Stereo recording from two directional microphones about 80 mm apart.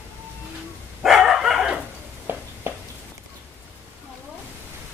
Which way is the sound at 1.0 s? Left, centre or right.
Centre.